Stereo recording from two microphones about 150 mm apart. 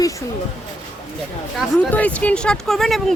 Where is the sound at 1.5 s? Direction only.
10° left (ahead or behind).